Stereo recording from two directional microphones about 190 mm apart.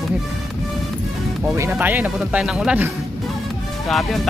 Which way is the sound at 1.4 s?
10° right (ahead or behind).